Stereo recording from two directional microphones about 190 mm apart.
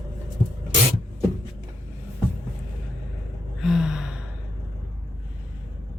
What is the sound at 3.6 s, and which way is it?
Gasp, centre (ahead or behind).